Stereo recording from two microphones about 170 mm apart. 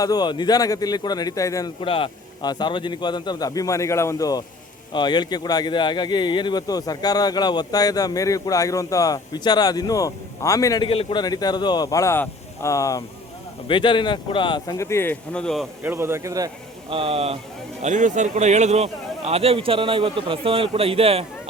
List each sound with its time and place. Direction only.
0.0 s speech: 25° left (ahead or behind)
1.8 s speech: 30° left (ahead or behind); by 15.6 s 5° left (ahead or behind)
15.8 s a man's voice: 15° right (ahead or behind)
16.9 s a man's voice: 35° right (ahead or behind)
17.8 s a man's voice: 45° right (ahead or behind)